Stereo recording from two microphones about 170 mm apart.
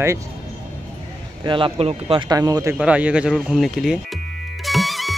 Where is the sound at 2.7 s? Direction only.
5° right (ahead or behind).